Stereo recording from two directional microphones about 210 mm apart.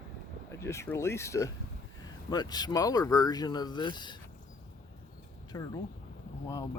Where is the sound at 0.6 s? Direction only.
15° left (ahead or behind).